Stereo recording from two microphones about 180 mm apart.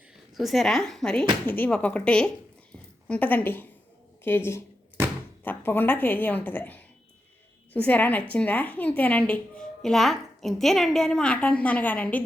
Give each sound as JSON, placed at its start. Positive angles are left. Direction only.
{"t": 0.3, "sound": "a woman's voice", "side_deg": 0}